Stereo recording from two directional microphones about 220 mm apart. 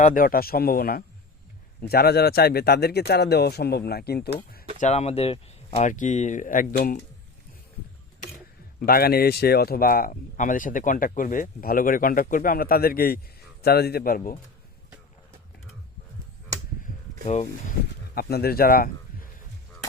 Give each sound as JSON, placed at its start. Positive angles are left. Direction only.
{"t": 0.0, "sound": "speech", "side_deg": 40}
{"t": 4.8, "sound": "speech", "side_deg": 30}
{"t": 8.9, "sound": "speech", "side_deg": 45}
{"t": 17.7, "sound": "speech", "side_deg": 45}